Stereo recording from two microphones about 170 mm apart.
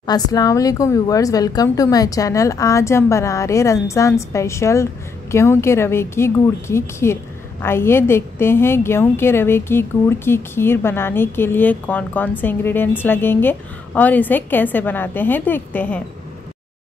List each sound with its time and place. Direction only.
0.0 s a woman's voice: 25° left (ahead or behind)